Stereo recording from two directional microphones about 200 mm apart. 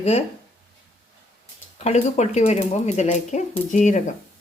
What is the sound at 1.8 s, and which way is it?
Speech, 35° left (ahead or behind).